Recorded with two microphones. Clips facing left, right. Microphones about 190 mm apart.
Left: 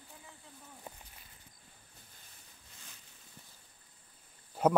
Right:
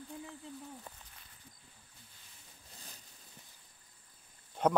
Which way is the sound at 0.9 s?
15° left (ahead or behind).